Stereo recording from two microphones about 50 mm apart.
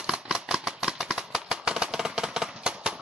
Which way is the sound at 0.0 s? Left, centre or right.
Centre.